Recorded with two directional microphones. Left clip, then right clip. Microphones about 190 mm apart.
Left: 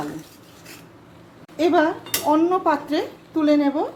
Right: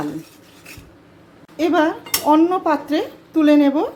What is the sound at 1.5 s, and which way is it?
Dishes, centre (ahead or behind).